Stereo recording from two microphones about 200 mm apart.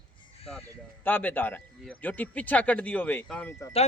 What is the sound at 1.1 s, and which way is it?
Speech, 10° left (ahead or behind).